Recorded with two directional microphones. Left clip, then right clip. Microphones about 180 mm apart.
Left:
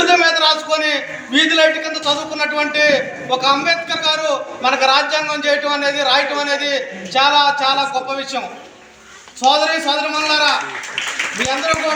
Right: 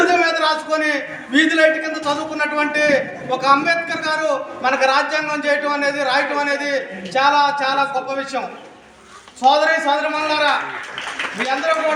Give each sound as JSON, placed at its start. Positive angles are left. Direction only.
{"t": 0.0, "sound": "a man's voice", "side_deg": -15}